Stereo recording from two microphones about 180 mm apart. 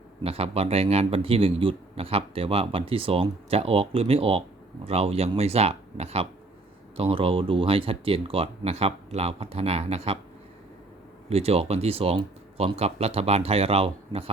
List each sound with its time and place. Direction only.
0.2 s speech: 35° right (ahead or behind)
11.3 s speech: 35° right (ahead or behind)